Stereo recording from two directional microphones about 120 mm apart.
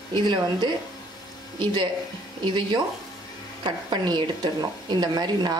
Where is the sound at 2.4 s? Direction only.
40° right (ahead or behind).